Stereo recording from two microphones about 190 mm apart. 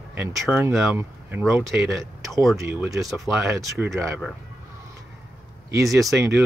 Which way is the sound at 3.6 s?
15° right (ahead or behind).